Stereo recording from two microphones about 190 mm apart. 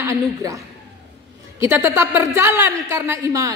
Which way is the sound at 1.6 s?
10° right (ahead or behind).